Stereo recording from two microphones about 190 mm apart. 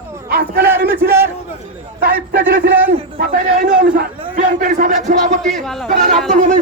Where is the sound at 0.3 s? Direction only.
55° right (ahead or behind).